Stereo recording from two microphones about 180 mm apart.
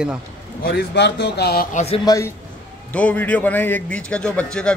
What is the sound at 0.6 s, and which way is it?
A man's voice, 65° left (ahead or behind).